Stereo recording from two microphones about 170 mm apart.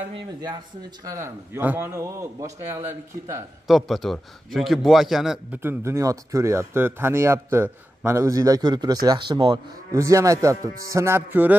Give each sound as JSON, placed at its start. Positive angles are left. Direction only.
{"t": 0.1, "sound": "a man's voice", "side_deg": -25}
{"t": 3.6, "sound": "a man's voice", "side_deg": 0}
{"t": 5.6, "sound": "speech", "side_deg": -15}